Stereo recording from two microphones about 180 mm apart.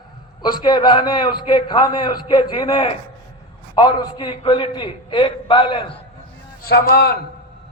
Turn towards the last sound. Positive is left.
turn(degrees=60)  # may be behind; listen again after turning